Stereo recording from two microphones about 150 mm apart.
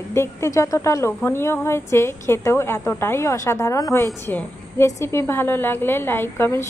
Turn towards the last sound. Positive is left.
turn(degrees=15)  # may be behind; listen again after turning